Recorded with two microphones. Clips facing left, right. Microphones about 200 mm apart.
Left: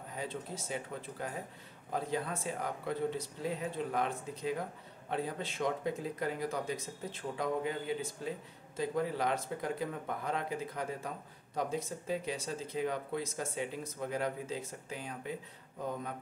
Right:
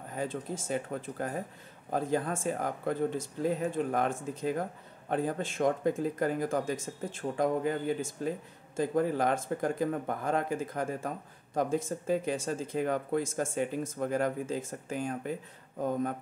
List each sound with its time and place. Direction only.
0.1 s speech: 50° right (ahead or behind)